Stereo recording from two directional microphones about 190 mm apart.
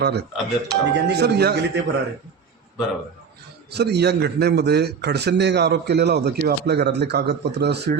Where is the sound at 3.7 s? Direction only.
60° right (ahead or behind).